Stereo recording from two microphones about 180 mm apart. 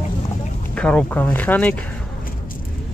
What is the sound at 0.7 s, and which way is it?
Speech, 5° left (ahead or behind).